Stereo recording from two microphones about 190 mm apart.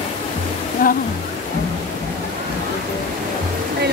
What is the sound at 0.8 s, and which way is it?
Speech, 50° left (ahead or behind).